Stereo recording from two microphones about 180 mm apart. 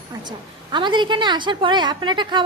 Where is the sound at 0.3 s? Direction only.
25° right (ahead or behind).